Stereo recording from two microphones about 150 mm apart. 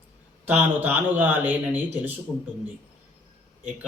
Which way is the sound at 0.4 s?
10° right (ahead or behind).